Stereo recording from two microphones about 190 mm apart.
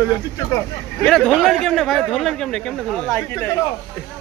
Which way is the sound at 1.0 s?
5° left (ahead or behind).